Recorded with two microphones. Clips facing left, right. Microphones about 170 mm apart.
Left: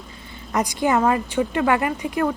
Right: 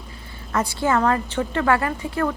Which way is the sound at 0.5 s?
15° left (ahead or behind).